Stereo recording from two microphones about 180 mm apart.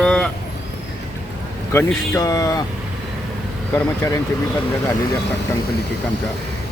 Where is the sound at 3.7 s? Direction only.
15° left (ahead or behind).